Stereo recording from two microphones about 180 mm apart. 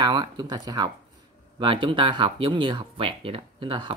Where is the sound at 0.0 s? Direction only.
20° right (ahead or behind).